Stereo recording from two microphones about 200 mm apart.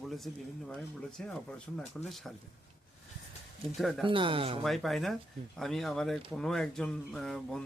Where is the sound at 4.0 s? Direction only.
25° right (ahead or behind).